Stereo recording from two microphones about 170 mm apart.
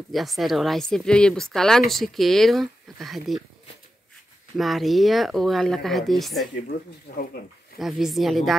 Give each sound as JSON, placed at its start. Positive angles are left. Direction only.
{"t": 0.1, "sound": "speech", "side_deg": 0}
{"t": 4.6, "sound": "speech", "side_deg": 0}
{"t": 7.1, "sound": "speech", "side_deg": 65}
{"t": 7.8, "sound": "speech", "side_deg": 0}